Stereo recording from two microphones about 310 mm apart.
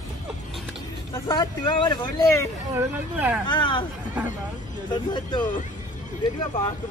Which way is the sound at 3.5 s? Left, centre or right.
Centre.